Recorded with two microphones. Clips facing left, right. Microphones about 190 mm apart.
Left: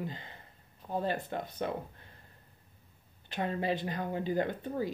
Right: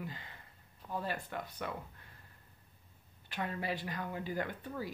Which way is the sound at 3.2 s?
25° left (ahead or behind).